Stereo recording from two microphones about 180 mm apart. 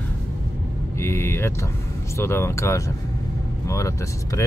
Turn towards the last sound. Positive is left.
turn(degrees=15)  # may be behind; listen again after turning